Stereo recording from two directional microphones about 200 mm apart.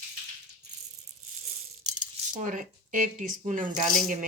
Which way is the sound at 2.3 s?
40° right (ahead or behind).